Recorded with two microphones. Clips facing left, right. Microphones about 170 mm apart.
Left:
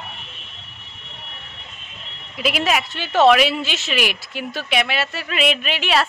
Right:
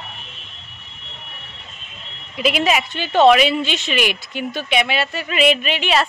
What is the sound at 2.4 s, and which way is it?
Speech, centre (ahead or behind).